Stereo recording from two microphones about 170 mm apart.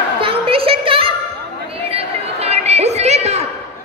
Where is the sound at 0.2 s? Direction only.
35° right (ahead or behind).